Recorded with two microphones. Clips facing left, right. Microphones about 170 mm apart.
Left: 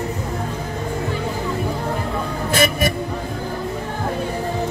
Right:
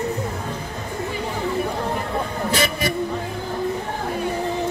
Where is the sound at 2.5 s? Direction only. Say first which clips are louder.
Left 5 dB; 50° left (ahead or behind).